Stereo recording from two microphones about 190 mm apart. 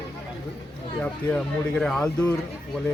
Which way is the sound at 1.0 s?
5° left (ahead or behind).